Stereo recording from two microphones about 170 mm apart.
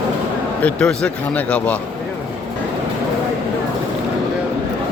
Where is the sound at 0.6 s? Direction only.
5° left (ahead or behind).